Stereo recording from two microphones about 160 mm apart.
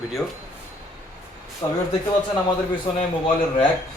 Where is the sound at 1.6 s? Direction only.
10° left (ahead or behind).